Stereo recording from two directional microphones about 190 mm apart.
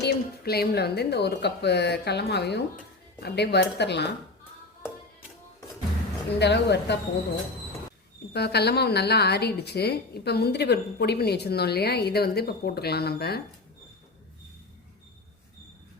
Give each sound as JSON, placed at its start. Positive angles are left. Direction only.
{"t": 0.0, "sound": "a woman's voice", "side_deg": 60}
{"t": 6.4, "sound": "a woman's voice", "side_deg": 65}
{"t": 8.3, "sound": "a woman's voice", "side_deg": 60}